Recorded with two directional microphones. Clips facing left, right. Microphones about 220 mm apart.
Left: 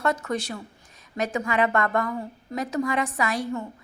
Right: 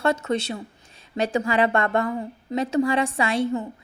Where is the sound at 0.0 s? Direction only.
25° right (ahead or behind).